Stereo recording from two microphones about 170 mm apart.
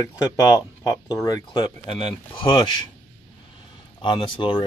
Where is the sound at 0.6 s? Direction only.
20° left (ahead or behind).